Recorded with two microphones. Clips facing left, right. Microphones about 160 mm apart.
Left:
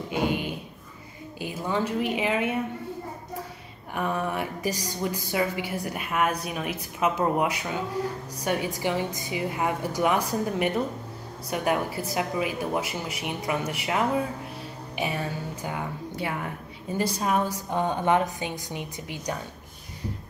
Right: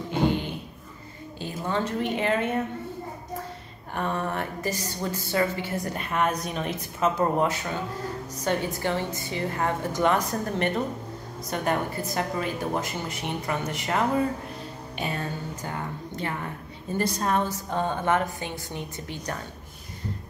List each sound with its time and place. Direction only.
0.1 s a sound: 15° left (ahead or behind)
1.4 s a woman's voice: 10° left (ahead or behind)
3.9 s a woman's voice: 5° left (ahead or behind)